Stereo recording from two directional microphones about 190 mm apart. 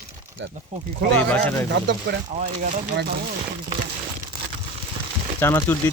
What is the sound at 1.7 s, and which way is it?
Speech, 65° right (ahead or behind).